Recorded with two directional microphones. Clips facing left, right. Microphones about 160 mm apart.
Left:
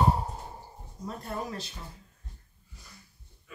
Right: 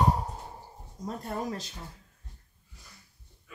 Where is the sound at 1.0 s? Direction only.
40° right (ahead or behind).